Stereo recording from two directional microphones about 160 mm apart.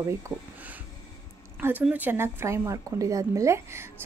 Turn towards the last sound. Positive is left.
turn(degrees=-15)  # may be behind; listen again after turning